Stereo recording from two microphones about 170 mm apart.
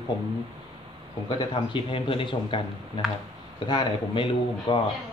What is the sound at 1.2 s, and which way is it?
A man's voice, 30° left (ahead or behind).